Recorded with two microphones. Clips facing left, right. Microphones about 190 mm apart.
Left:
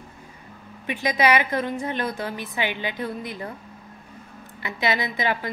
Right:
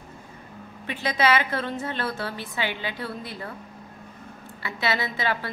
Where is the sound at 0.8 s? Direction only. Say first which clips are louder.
Left 2 dB; 15° left (ahead or behind).